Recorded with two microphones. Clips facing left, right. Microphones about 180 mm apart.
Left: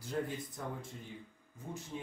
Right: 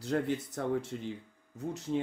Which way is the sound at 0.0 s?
75° right (ahead or behind).